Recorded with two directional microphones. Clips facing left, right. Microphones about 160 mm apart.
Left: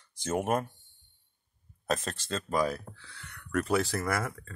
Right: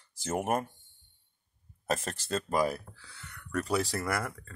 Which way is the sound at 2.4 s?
10° right (ahead or behind).